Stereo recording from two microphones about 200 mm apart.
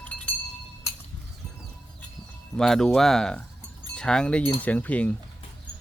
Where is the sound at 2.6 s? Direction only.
Centre (ahead or behind).